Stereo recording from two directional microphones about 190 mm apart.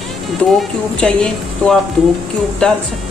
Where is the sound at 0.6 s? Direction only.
5° left (ahead or behind).